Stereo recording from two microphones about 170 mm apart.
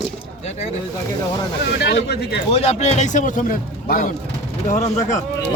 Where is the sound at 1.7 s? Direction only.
75° left (ahead or behind).